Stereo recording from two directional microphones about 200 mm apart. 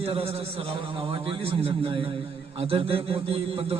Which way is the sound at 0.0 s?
30° right (ahead or behind).